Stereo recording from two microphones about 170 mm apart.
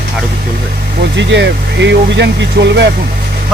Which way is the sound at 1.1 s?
90° right.